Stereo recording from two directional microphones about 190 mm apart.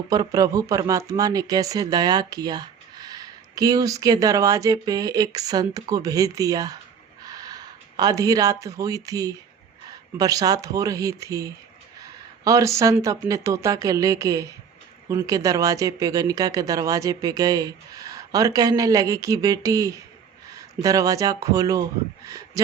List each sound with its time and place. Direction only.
0.1 s speech: 20° right (ahead or behind)